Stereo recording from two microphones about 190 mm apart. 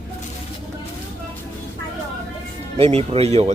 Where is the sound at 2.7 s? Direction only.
30° right (ahead or behind).